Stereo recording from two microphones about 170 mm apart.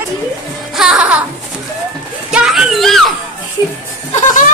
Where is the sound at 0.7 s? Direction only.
5° right (ahead or behind).